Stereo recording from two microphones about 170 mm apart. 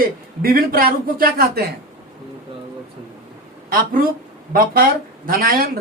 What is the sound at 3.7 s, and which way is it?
Speech, 55° right (ahead or behind).